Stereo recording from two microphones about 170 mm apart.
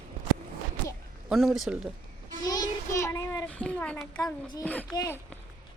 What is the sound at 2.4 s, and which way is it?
Child singing, 20° left (ahead or behind).